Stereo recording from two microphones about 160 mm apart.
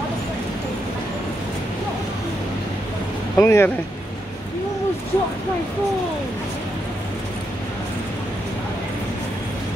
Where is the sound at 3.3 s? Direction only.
15° left (ahead or behind).